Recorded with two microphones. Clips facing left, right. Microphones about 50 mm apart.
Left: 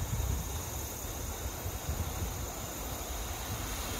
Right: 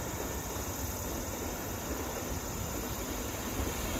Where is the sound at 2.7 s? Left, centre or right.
Right.